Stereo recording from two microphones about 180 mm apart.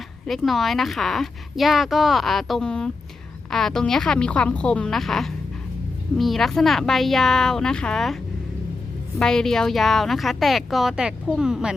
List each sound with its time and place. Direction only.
0.3 s a woman's voice: centre (ahead or behind)